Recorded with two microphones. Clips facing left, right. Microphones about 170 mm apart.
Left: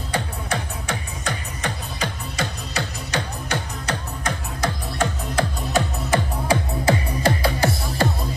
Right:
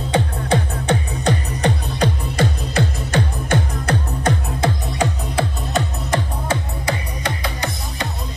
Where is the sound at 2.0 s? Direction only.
55° right (ahead or behind).